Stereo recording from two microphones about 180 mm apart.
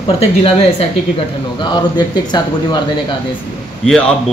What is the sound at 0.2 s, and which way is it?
A woman's voice, 35° left (ahead or behind).